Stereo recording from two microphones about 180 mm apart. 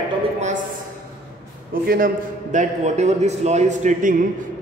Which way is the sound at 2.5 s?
40° right (ahead or behind).